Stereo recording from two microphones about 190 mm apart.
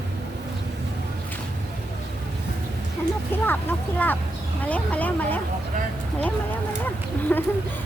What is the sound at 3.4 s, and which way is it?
Speech, 10° left (ahead or behind).